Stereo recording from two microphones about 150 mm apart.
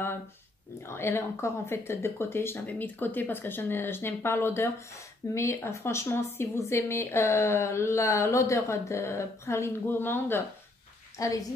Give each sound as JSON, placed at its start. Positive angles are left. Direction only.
{"t": 0.8, "sound": "speech", "side_deg": 15}